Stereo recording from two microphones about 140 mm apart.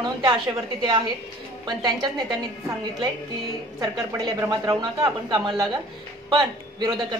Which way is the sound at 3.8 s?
25° right (ahead or behind).